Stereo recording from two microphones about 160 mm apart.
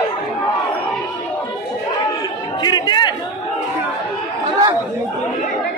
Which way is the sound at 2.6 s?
25° left (ahead or behind).